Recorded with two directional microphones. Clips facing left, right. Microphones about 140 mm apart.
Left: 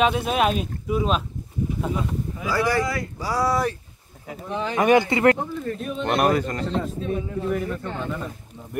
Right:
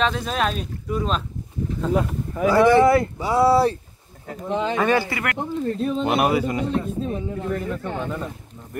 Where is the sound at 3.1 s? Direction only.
25° right (ahead or behind).